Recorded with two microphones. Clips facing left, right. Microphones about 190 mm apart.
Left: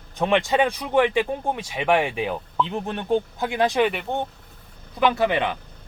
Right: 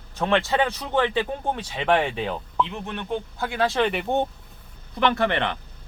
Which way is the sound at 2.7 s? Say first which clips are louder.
Left 6 dB; 35° left (ahead or behind).